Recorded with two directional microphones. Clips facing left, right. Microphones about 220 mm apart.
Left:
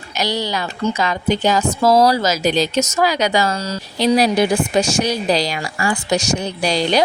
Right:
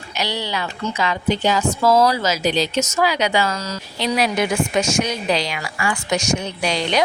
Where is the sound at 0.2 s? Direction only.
40° left (ahead or behind).